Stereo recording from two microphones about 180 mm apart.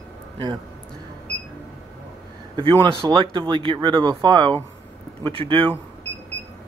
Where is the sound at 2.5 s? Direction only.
25° right (ahead or behind).